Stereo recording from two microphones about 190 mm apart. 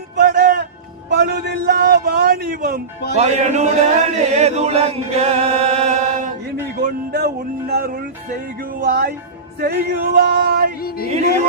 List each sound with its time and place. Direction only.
0.2 s music: 50° right (ahead or behind)
1.1 s a man's voice: 55° right (ahead or behind)
3.2 s chant: 35° right (ahead or behind)
6.8 s music: 55° right (ahead or behind)
10.8 s music: 55° left (ahead or behind)